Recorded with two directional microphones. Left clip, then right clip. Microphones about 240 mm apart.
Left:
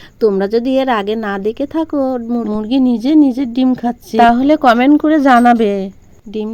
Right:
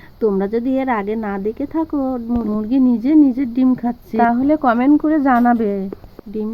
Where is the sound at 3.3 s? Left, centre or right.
Left.